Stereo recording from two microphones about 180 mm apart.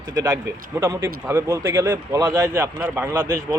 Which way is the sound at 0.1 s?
20° right (ahead or behind).